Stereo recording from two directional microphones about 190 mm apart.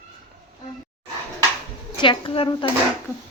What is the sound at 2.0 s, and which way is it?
Speech, 25° left (ahead or behind).